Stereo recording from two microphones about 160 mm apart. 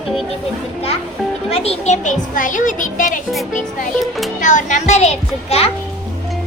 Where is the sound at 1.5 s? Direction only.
40° left (ahead or behind).